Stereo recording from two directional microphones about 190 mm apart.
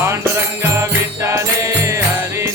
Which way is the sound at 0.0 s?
15° right (ahead or behind).